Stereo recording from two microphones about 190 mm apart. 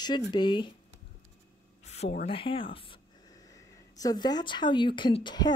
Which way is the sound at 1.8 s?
35° left (ahead or behind).